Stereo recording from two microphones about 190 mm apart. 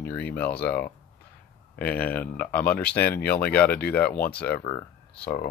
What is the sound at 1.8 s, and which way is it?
Speech, 5° left (ahead or behind).